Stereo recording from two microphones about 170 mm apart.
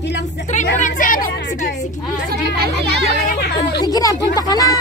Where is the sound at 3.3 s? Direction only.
75° left (ahead or behind).